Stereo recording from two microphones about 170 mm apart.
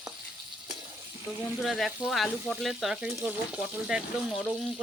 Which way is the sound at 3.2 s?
10° right (ahead or behind).